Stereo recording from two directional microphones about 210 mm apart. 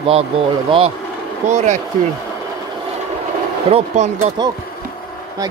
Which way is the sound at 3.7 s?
30° right (ahead or behind).